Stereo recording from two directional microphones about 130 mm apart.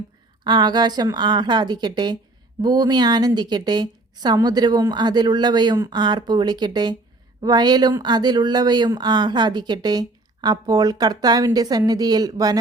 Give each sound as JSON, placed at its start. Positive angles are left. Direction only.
{"t": 0.4, "sound": "speech", "side_deg": -35}